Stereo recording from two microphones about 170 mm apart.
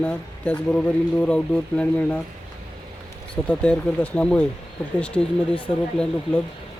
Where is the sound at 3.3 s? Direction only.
5° left (ahead or behind).